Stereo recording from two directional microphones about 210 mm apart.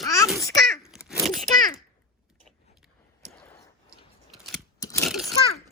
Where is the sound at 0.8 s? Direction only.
5° right (ahead or behind).